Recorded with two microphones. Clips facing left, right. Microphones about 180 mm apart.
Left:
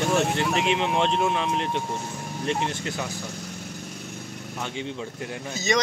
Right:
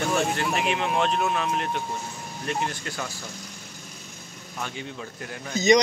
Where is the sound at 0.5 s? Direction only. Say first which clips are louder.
Left 1 dB; 20° left (ahead or behind).